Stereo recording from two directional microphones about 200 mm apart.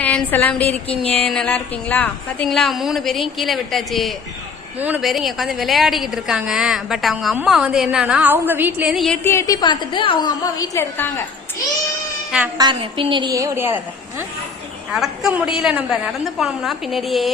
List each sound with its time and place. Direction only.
0.0 s a sound: 10° left (ahead or behind)
1.2 s a woman's voice: 5° left (ahead or behind)
9.2 s a woman's voice: 15° left (ahead or behind)
12.5 s a woman's voice: 25° right (ahead or behind); by 17.3 s centre (ahead or behind)